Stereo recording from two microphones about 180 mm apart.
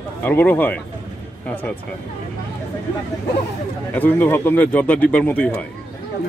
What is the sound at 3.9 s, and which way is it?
Speech, 10° left (ahead or behind).